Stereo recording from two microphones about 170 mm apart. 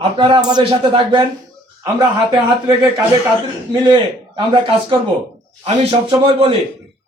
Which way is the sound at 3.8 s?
30° right (ahead or behind).